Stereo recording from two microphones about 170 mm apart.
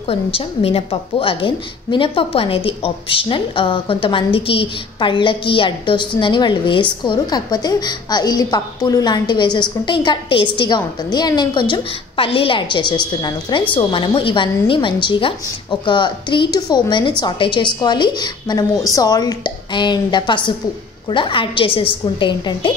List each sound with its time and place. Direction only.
0.1 s a woman's voice: 35° left (ahead or behind)